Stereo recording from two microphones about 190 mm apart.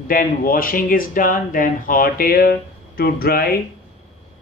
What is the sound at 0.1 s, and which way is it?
Speech, 50° left (ahead or behind).